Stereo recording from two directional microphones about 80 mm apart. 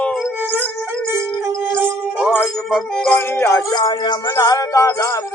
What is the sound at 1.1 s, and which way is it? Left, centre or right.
Music, right.